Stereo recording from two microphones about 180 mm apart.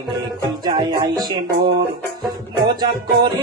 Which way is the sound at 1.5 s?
55° right (ahead or behind).